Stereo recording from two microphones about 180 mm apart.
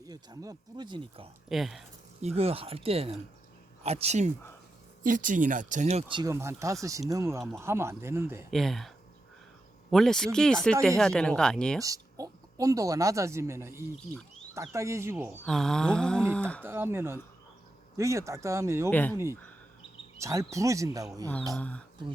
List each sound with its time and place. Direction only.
0.0 s speech: 20° right (ahead or behind)
1.5 s speech: centre (ahead or behind)
2.2 s speech: 35° right (ahead or behind)
6.3 s speech: 15° right (ahead or behind)
8.4 s speech: centre (ahead or behind)
9.9 s speech: 5° left (ahead or behind)
11.8 s speech: 20° right (ahead or behind)
15.4 s speech: centre (ahead or behind)
16.6 s speech: 10° right (ahead or behind)
18.9 s speech: 10° left (ahead or behind)
19.1 s speech: 15° right (ahead or behind)
21.5 s speech: 5° left (ahead or behind)